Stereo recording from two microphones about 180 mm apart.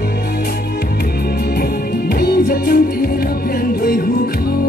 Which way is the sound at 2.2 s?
60° left (ahead or behind).